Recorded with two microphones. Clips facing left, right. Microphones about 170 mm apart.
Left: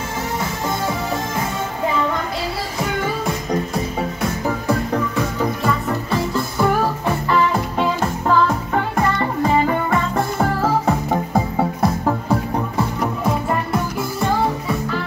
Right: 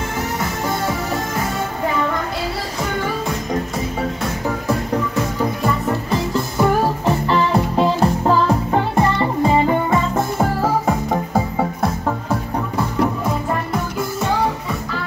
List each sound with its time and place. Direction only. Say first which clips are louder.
6.6 s music: right 2 dB; 20° right (ahead or behind)
11.1 s music: even; centre (ahead or behind)